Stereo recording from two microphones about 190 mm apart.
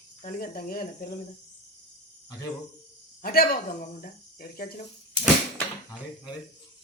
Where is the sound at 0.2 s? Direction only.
45° left (ahead or behind).